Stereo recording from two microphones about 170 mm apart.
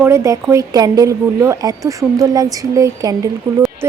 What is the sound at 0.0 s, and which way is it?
A woman's voice, 15° right (ahead or behind).